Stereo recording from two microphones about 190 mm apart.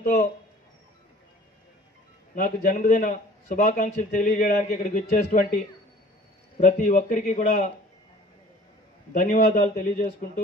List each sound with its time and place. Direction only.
0.0 s speech: 45° left (ahead or behind)
2.3 s a man's voice: 45° left (ahead or behind)
6.6 s a man's voice: 40° left (ahead or behind)
9.1 s a man's voice: 45° left (ahead or behind)